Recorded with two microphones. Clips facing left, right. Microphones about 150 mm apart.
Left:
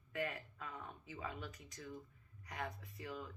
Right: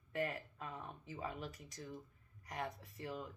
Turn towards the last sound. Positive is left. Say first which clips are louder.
# right 2 dB
turn(degrees=-40)  # may be behind; listen again after turning